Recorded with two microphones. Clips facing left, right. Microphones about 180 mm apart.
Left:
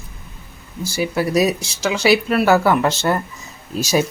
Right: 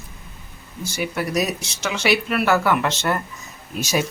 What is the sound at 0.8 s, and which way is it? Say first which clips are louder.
Speech: left 5 dB; 35° left (ahead or behind).